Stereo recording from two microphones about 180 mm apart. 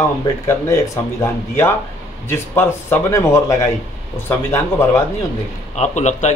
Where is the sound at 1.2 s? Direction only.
15° left (ahead or behind).